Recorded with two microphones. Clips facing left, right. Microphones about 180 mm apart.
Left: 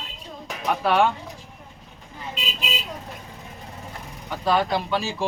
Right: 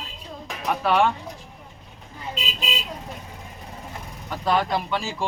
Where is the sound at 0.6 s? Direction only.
Centre (ahead or behind).